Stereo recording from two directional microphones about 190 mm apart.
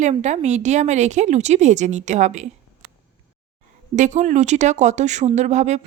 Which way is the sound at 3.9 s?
40° right (ahead or behind).